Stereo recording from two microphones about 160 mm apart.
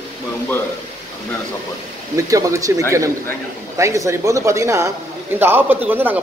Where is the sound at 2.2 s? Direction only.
20° right (ahead or behind).